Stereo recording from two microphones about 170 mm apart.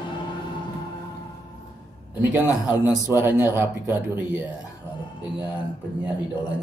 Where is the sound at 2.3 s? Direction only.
5° right (ahead or behind).